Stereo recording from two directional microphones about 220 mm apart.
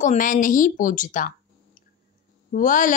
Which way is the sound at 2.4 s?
35° left (ahead or behind).